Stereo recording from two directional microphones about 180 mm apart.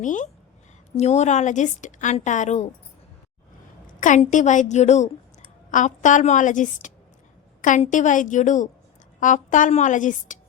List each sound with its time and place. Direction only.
0.0 s a woman's voice: 45° left (ahead or behind)
4.0 s a woman's voice: 45° left (ahead or behind)